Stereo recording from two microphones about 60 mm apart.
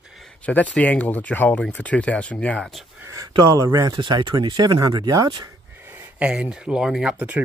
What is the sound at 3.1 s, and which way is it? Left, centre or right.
Speech, right.